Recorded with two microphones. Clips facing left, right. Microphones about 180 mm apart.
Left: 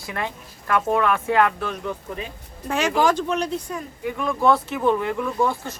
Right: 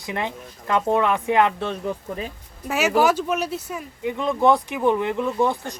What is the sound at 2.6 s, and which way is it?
Speech, 5° right (ahead or behind).